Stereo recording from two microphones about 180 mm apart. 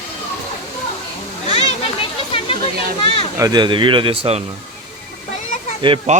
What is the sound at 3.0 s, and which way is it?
Speech, 30° left (ahead or behind).